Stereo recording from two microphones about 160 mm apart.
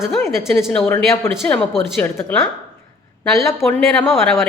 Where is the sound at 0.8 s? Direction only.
15° left (ahead or behind).